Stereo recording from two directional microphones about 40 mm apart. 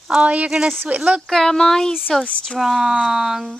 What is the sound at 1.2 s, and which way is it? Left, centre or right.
Speech, centre.